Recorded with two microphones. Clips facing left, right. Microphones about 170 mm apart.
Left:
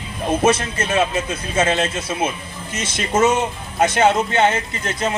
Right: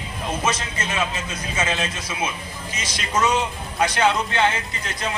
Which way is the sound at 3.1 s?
50° left (ahead or behind).